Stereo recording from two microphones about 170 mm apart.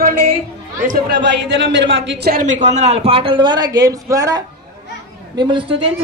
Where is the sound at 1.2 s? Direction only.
90° right.